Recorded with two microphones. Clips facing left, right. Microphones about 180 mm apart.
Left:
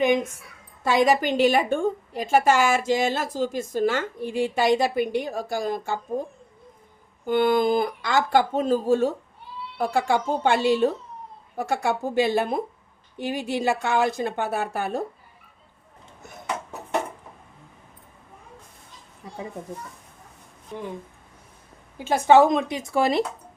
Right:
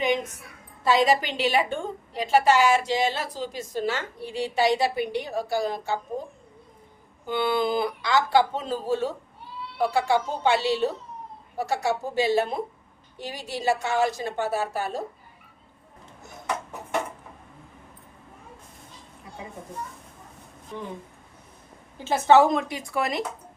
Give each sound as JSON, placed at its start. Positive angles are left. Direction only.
{"t": 0.9, "sound": "a woman's voice", "side_deg": 50}
{"t": 7.3, "sound": "a woman's voice", "side_deg": 45}
{"t": 21.9, "sound": "speech", "side_deg": 15}